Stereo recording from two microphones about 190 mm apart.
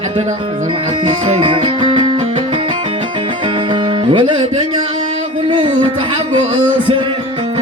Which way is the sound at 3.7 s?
25° right (ahead or behind).